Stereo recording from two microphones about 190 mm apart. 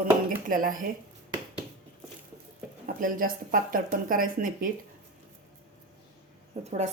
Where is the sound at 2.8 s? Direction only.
45° right (ahead or behind).